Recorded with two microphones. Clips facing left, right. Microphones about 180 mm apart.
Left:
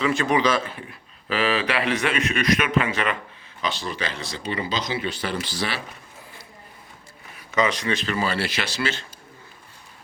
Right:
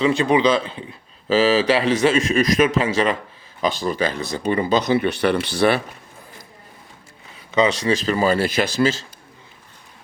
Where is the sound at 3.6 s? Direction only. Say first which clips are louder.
Right 7 dB; 45° right (ahead or behind).